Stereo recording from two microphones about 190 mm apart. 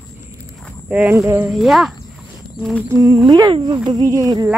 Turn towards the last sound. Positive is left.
turn(degrees=-20)  # may be behind; listen again after turning